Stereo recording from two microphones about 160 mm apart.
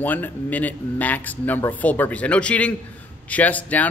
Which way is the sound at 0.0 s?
10° left (ahead or behind).